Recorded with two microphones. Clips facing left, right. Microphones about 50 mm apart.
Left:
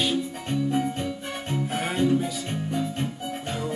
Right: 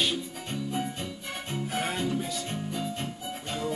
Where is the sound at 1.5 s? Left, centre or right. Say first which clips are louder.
Left 3 dB; centre.